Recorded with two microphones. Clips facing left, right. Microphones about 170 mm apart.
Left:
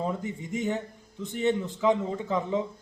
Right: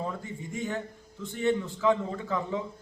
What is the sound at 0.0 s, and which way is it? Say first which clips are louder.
Speech: left 4 dB; 20° left (ahead or behind).